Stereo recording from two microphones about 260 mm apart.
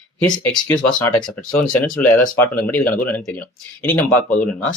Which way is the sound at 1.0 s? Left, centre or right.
Centre.